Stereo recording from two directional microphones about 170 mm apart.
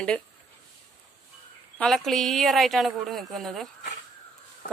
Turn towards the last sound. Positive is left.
turn(degrees=50)  # may be behind; listen again after turning